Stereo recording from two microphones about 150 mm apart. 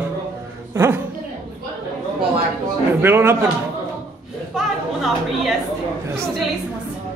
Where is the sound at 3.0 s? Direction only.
15° right (ahead or behind).